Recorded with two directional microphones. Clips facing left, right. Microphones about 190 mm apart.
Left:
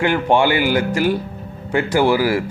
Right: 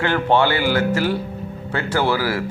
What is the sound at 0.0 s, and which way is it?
A man's voice, 15° left (ahead or behind).